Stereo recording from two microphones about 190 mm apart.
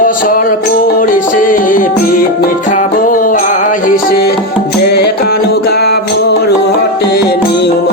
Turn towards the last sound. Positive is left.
turn(degrees=60)  # may be behind; listen again after turning